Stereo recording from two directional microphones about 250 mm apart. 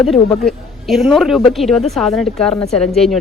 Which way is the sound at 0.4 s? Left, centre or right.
Centre.